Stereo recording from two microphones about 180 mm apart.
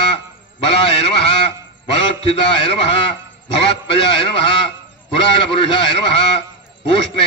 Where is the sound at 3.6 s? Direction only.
30° left (ahead or behind).